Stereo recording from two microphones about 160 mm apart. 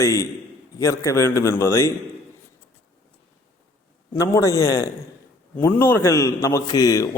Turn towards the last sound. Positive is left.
turn(degrees=20)  # may be behind; listen again after turning